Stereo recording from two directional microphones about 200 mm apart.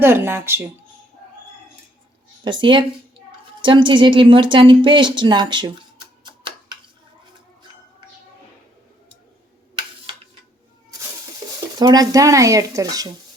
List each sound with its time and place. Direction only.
0.0 s speech: 10° right (ahead or behind)
2.4 s speech: 25° right (ahead or behind)
11.4 s a sound: 15° right (ahead or behind)
11.8 s speech: 20° right (ahead or behind)